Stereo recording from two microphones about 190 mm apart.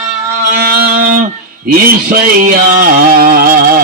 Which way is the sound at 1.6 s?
50° right (ahead or behind).